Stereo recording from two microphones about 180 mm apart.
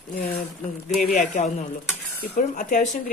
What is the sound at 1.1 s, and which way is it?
Stir, 40° left (ahead or behind).